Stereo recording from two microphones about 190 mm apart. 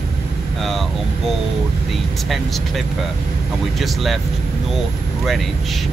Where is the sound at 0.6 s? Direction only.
Centre (ahead or behind).